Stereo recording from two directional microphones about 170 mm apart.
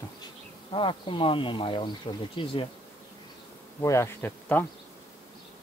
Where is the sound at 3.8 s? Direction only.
15° left (ahead or behind).